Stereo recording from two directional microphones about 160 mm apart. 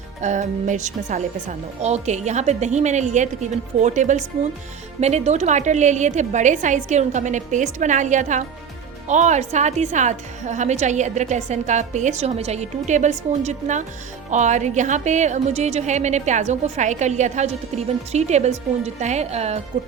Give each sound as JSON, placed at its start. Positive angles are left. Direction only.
{"t": 0.2, "sound": "a woman's voice", "side_deg": -50}